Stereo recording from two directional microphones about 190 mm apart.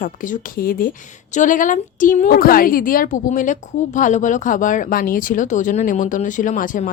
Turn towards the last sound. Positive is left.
turn(degrees=45)  # may be behind; listen again after turning